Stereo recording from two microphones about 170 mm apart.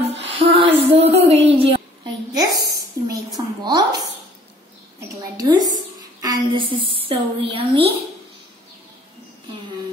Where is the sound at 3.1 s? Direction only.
25° right (ahead or behind).